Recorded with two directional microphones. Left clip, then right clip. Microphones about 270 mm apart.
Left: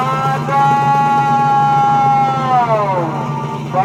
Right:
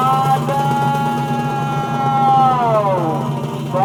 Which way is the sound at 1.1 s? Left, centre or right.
Centre.